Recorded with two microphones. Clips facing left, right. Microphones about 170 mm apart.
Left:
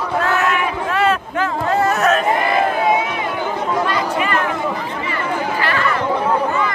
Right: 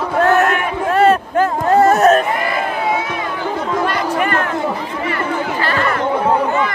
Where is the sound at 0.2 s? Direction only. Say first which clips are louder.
Right 7 dB; 50° right (ahead or behind).